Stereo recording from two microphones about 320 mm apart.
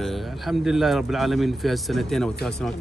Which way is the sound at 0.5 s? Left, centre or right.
Centre.